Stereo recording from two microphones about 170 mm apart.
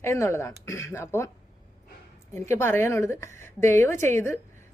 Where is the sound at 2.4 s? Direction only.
15° left (ahead or behind).